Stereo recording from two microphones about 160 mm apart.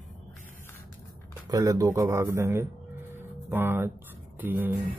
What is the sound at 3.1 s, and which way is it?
Music, 15° right (ahead or behind).